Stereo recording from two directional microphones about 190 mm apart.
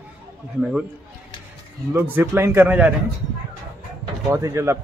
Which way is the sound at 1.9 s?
10° right (ahead or behind).